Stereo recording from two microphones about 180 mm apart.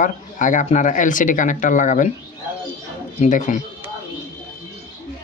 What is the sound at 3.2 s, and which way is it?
Speech, 40° left (ahead or behind).